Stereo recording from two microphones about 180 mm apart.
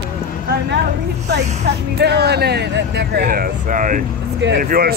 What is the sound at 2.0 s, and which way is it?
Speech, 65° right (ahead or behind).